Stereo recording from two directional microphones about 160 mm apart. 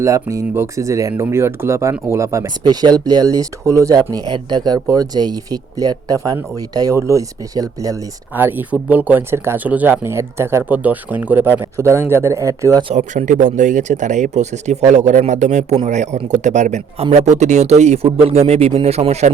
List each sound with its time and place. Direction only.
0.0 s speech: 20° right (ahead or behind)
12.9 s a man's voice: 50° right (ahead or behind)